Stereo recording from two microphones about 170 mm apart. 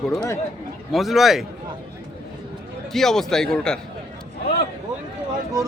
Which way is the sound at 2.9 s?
Centre (ahead or behind).